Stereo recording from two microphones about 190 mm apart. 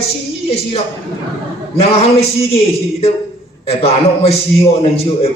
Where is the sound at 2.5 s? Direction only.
30° left (ahead or behind).